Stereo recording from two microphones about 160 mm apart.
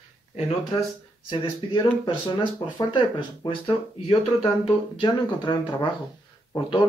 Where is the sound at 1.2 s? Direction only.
25° left (ahead or behind).